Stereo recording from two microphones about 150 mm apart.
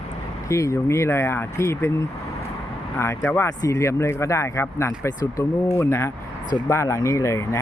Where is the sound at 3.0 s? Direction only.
15° left (ahead or behind).